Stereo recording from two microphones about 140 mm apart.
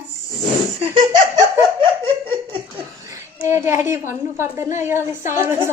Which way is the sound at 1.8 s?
40° right (ahead or behind).